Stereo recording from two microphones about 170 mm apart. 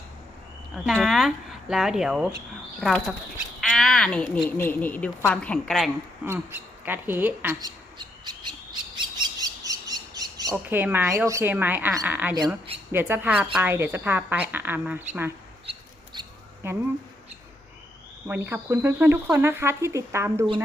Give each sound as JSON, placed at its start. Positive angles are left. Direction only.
{"t": 0.9, "sound": "a woman's voice", "side_deg": 0}
{"t": 6.2, "sound": "a woman's voice", "side_deg": -10}
{"t": 7.6, "sound": "squawk", "side_deg": -25}
{"t": 10.7, "sound": "a woman's voice", "side_deg": -10}
{"t": 16.6, "sound": "a woman's voice", "side_deg": -15}
{"t": 18.3, "sound": "a woman's voice", "side_deg": -15}